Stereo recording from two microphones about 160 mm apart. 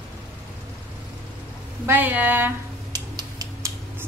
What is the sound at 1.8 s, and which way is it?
Speech, 10° right (ahead or behind).